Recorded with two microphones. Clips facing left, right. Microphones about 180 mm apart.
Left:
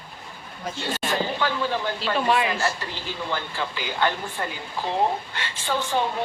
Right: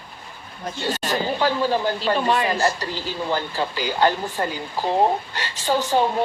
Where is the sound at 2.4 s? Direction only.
40° right (ahead or behind).